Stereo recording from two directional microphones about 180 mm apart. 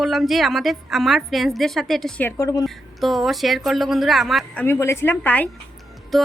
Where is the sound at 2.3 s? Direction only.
15° left (ahead or behind).